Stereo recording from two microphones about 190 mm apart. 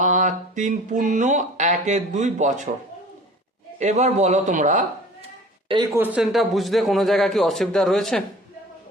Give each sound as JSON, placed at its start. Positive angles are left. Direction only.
{"t": 0.0, "sound": "speech", "side_deg": -40}
{"t": 3.8, "sound": "speech", "side_deg": -40}
{"t": 5.9, "sound": "a man's voice", "side_deg": -5}